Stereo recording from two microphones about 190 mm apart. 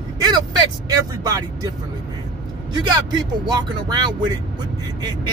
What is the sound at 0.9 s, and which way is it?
Speech, 20° right (ahead or behind).